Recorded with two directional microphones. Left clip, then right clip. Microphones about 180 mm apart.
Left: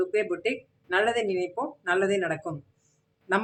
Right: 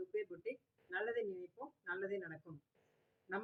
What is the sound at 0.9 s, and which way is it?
Speech, 40° left (ahead or behind).